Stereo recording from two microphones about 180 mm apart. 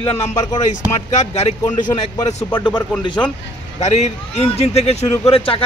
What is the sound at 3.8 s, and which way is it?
A man's voice, 40° left (ahead or behind).